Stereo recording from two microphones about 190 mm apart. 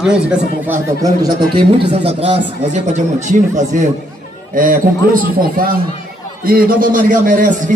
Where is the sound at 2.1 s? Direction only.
30° right (ahead or behind).